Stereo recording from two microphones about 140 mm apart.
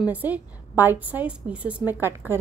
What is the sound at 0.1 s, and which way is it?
A woman's voice, 10° right (ahead or behind).